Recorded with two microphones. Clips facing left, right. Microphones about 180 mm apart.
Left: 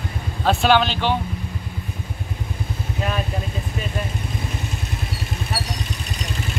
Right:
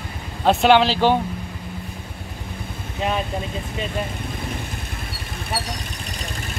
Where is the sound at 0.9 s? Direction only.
40° right (ahead or behind).